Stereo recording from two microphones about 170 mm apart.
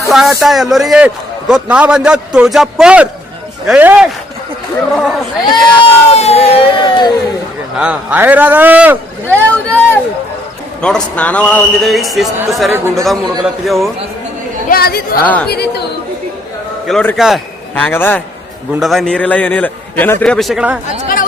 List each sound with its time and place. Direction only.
0.1 s a man's voice: centre (ahead or behind)
5.5 s crowd: 35° left (ahead or behind)
7.8 s speech: 10° right (ahead or behind)
9.2 s a sound: 10° left (ahead or behind)
10.8 s a man's voice: 5° left (ahead or behind)
12.7 s speech: 15° right (ahead or behind)
13.4 s a man's voice: centre (ahead or behind)
14.7 s speech: 65° left (ahead or behind)
15.2 s a man's voice: 10° left (ahead or behind)
15.4 s speech: 70° left (ahead or behind)
17.2 s a man's voice: centre (ahead or behind)
17.7 s a man's voice: 10° left (ahead or behind)
18.8 s a man's voice: centre (ahead or behind)